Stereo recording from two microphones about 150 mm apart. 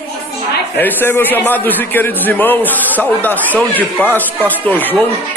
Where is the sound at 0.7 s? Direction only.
15° left (ahead or behind).